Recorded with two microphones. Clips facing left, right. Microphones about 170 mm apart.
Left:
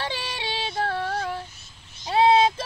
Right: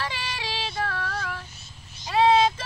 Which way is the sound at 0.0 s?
30° left (ahead or behind).